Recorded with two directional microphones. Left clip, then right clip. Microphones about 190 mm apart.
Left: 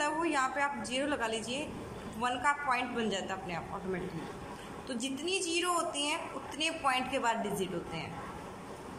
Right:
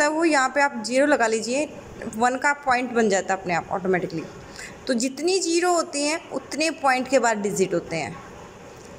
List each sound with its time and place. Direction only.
0.0 s a woman's voice: 40° right (ahead or behind)